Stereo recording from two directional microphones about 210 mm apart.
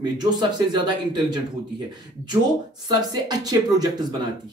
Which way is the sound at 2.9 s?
20° right (ahead or behind).